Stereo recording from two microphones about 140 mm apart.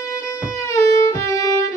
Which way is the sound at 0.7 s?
20° left (ahead or behind).